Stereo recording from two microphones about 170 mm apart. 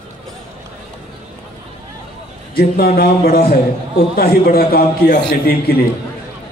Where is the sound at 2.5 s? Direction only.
65° left (ahead or behind).